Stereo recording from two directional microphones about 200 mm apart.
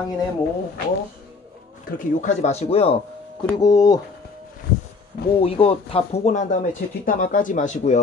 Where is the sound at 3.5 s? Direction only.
20° left (ahead or behind).